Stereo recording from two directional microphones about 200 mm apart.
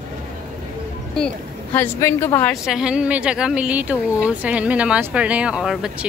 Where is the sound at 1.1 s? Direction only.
5° left (ahead or behind).